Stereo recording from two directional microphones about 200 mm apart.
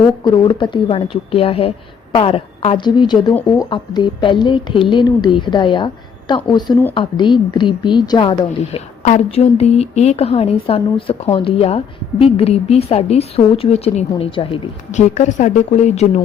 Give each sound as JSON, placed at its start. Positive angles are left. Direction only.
{"t": 0.3, "sound": "a woman's voice", "side_deg": 25}